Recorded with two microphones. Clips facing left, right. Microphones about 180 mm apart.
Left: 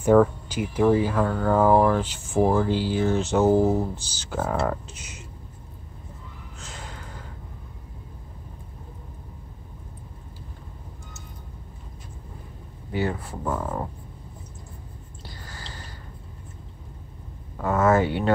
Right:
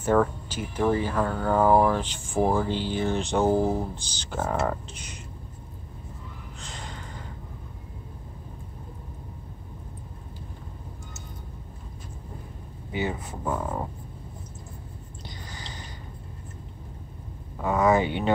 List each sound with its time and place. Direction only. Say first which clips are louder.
0.0 s speech: left 5 dB; 10° left (ahead or behind)
6.6 s gasp: left 1 dB; 5° left (ahead or behind)
12.9 s speech: left 3 dB; 20° right (ahead or behind)
13.4 s speech: even; 5° right (ahead or behind)
17.9 s speech: left 2 dB; centre (ahead or behind)